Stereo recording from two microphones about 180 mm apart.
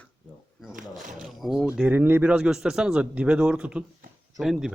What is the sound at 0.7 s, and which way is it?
Speech, 45° right (ahead or behind).